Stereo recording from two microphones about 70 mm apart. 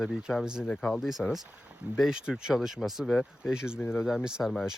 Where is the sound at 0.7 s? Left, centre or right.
Centre.